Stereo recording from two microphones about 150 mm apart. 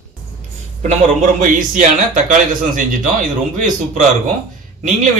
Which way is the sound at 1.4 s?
60° right (ahead or behind).